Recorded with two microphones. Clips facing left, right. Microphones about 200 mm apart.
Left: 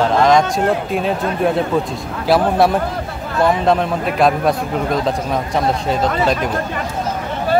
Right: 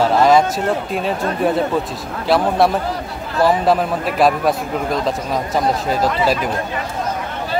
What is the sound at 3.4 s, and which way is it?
A man's voice, 5° right (ahead or behind).